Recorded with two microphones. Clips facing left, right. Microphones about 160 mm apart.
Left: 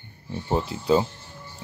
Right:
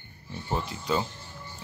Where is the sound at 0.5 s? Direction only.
25° left (ahead or behind).